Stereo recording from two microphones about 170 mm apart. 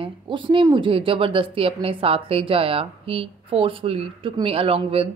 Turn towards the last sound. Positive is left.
turn(degrees=-35)  # may be behind; listen again after turning